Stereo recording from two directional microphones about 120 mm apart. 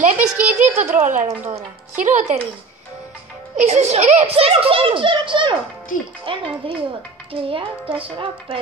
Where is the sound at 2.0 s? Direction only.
90° right.